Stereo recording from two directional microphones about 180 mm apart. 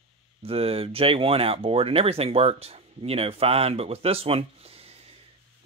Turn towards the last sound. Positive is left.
turn(degrees=-30)  # may be behind; listen again after turning